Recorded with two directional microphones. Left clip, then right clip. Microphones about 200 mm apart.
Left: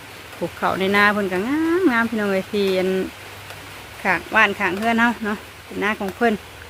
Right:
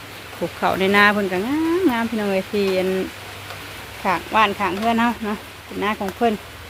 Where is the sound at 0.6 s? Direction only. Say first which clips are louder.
Right 2 dB; 5° left (ahead or behind).